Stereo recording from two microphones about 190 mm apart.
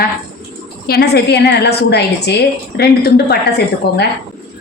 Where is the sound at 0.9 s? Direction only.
60° left (ahead or behind).